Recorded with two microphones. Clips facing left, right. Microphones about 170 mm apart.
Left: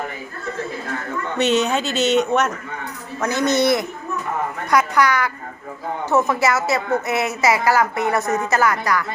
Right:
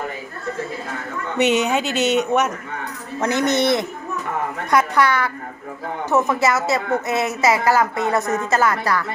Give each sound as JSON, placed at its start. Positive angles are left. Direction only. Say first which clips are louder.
{"t": 1.4, "sound": "a woman's voice", "louder": "right 1 dB", "side_deg": -15}